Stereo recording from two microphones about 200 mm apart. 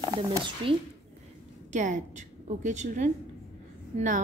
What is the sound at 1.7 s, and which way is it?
A woman's voice, 35° right (ahead or behind).